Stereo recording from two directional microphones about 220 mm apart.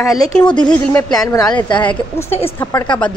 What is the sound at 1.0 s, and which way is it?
A woman's voice, 15° left (ahead or behind).